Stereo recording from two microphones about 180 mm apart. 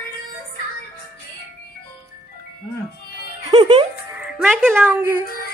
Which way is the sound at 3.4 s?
25° right (ahead or behind).